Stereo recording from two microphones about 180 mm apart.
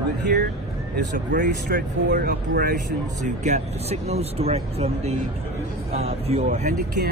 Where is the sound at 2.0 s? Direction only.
65° right (ahead or behind).